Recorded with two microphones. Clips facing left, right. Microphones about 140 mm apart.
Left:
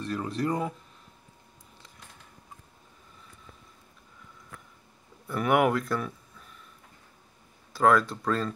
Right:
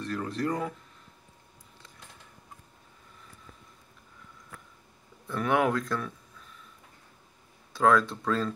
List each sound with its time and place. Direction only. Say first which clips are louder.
0.0 s speech: left 1 dB; 15° left (ahead or behind)
5.2 s speech: left 2 dB; 10° left (ahead or behind)
7.7 s speech: left 1 dB; 5° left (ahead or behind)